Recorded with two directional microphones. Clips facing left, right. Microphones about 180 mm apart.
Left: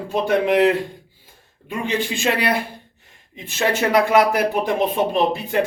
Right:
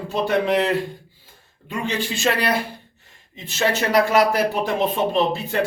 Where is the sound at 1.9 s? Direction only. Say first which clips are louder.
Left 3 dB; 55° left (ahead or behind).